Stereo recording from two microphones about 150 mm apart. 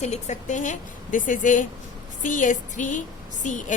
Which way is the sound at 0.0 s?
50° left (ahead or behind).